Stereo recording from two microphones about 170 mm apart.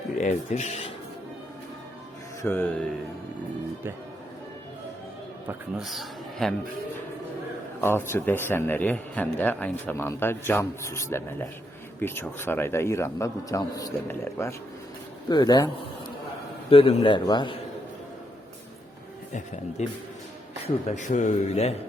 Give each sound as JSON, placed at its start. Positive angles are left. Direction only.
{"t": 0.2, "sound": "speech", "side_deg": 45}
{"t": 2.4, "sound": "a man's voice", "side_deg": 10}
{"t": 5.8, "sound": "a man's voice", "side_deg": 0}
{"t": 7.8, "sound": "a man's voice", "side_deg": 15}
{"t": 19.3, "sound": "speech", "side_deg": 45}